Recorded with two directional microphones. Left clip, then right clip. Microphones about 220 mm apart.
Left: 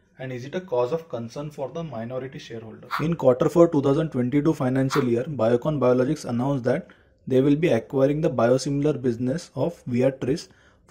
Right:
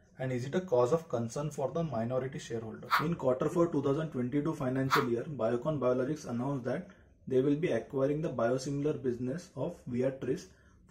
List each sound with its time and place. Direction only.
0.2 s speech: 5° right (ahead or behind)
3.2 s speech: 40° left (ahead or behind)